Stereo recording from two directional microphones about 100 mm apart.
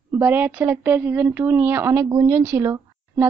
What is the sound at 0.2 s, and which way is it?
A woman's voice, 15° right (ahead or behind).